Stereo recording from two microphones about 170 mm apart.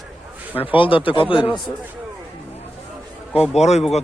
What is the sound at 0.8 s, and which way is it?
Speech, 30° left (ahead or behind).